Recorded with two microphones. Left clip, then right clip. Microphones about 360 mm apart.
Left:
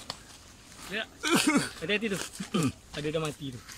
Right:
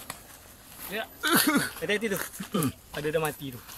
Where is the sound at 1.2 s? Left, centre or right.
Centre.